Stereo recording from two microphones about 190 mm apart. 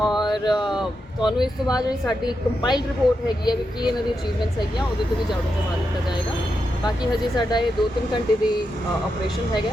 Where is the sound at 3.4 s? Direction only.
20° left (ahead or behind).